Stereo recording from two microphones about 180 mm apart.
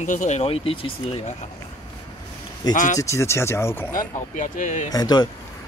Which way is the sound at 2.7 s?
45° left (ahead or behind).